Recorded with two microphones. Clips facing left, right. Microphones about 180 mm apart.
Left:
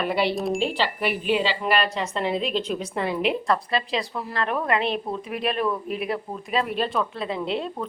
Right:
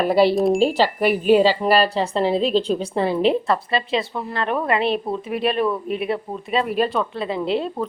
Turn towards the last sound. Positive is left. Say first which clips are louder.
# right 5 dB
turn(degrees=0)  # may be behind; listen again after turning